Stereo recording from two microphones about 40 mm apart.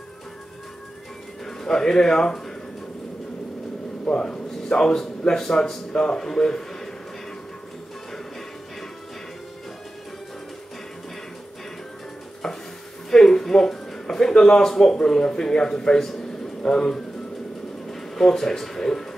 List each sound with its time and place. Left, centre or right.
1.4 s speech: centre
4.1 s a man's voice: left
13.1 s speech: centre
17.8 s speech: centre